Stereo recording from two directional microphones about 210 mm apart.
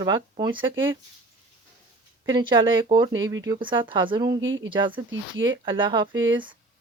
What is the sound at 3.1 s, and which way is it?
Speech, 65° right (ahead or behind).